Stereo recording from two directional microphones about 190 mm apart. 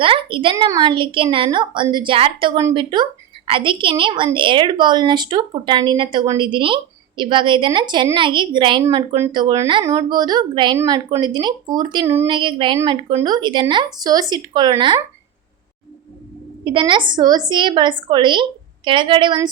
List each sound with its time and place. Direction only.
0.0 s a woman's voice: 25° right (ahead or behind)
12.3 s a woman's voice: 25° right (ahead or behind)
16.6 s a woman's voice: 25° right (ahead or behind)